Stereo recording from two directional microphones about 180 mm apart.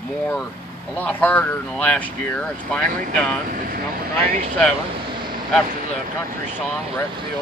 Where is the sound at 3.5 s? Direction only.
55° right (ahead or behind).